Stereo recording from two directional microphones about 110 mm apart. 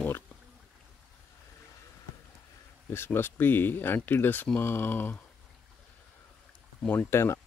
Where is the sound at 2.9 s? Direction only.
20° left (ahead or behind).